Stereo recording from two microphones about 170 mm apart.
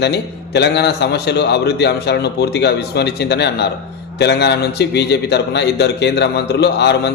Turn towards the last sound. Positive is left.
turn(degrees=80)